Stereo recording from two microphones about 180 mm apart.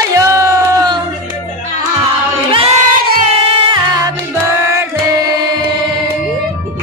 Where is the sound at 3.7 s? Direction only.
20° right (ahead or behind).